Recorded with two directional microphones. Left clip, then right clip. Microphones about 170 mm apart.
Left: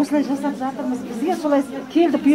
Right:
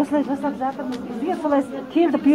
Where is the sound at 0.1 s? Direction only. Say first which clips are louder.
Left 1 dB; 15° left (ahead or behind).